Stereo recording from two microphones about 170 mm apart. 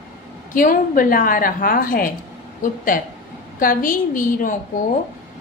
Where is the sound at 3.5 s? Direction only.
55° left (ahead or behind).